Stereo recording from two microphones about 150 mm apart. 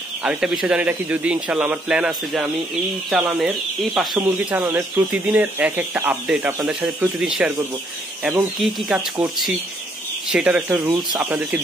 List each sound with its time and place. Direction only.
0.2 s a man's voice: 5° right (ahead or behind)
4.2 s a man's voice: 10° right (ahead or behind)
10.3 s a man's voice: 5° right (ahead or behind)